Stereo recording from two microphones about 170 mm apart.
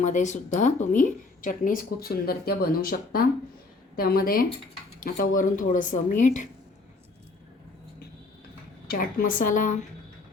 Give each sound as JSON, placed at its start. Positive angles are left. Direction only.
{"t": 0.0, "sound": "a woman's voice", "side_deg": 45}
{"t": 8.9, "sound": "speech", "side_deg": 55}